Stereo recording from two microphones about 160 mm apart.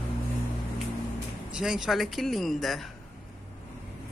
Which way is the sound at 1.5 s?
5° right (ahead or behind).